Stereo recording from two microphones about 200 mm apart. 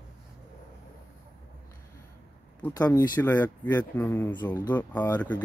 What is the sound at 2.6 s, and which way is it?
Speech, 10° left (ahead or behind).